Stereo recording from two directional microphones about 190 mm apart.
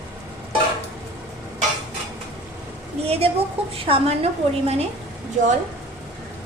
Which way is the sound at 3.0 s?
30° right (ahead or behind).